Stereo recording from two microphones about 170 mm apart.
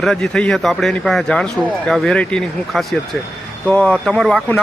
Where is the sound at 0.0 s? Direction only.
5° left (ahead or behind).